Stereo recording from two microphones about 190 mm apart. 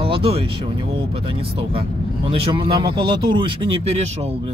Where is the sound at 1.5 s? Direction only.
30° right (ahead or behind).